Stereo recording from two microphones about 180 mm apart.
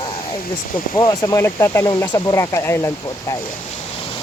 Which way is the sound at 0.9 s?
20° left (ahead or behind).